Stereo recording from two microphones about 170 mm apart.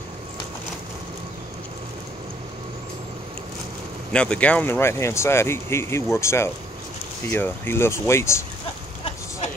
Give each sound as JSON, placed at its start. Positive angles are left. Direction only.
{"t": 4.1, "sound": "speech", "side_deg": 5}